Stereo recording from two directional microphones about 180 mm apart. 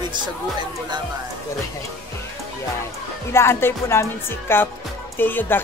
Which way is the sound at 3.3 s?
15° left (ahead or behind).